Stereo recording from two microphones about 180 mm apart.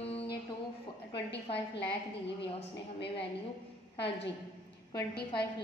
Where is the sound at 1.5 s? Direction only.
30° left (ahead or behind).